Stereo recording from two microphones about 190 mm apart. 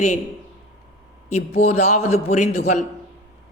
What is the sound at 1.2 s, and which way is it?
Speech, 35° left (ahead or behind).